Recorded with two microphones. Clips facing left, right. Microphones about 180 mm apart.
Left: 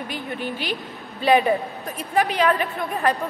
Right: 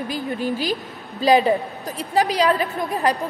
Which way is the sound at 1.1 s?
35° right (ahead or behind).